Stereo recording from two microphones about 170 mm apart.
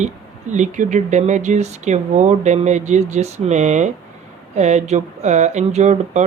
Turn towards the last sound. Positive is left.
turn(degrees=-45)  # may be behind; listen again after turning